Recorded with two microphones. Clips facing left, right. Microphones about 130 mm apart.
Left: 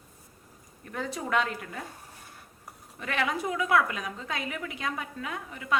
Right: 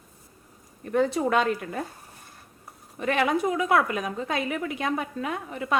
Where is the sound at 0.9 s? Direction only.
25° right (ahead or behind).